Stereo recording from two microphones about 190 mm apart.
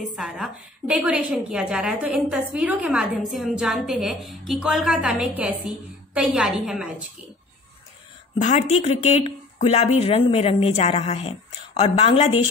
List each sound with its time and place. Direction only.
0.1 s a woman's voice: 5° right (ahead or behind)
8.4 s speech: 40° left (ahead or behind)